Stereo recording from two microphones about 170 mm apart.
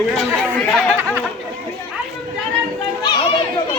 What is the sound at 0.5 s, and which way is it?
Speech, 5° left (ahead or behind).